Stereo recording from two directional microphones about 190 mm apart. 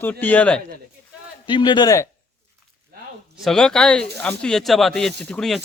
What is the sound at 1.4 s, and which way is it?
Speech, 25° left (ahead or behind).